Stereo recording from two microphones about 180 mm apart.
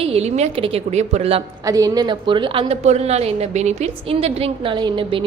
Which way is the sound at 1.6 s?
20° right (ahead or behind).